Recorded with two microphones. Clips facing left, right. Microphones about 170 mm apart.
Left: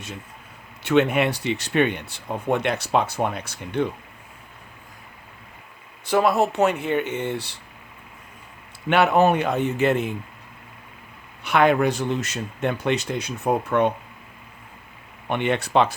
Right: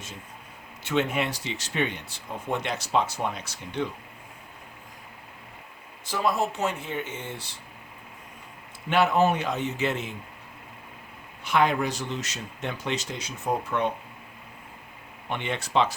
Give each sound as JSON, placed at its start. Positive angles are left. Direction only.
{"t": 0.9, "sound": "speech", "side_deg": 65}
{"t": 6.1, "sound": "speech", "side_deg": 65}
{"t": 8.9, "sound": "speech", "side_deg": 65}
{"t": 11.4, "sound": "speech", "side_deg": 65}
{"t": 15.3, "sound": "speech", "side_deg": 60}